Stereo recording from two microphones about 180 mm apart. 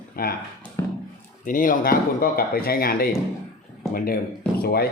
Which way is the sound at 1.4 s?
50° left (ahead or behind).